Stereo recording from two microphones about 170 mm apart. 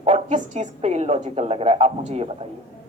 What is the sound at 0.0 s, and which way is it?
Speech, 40° right (ahead or behind).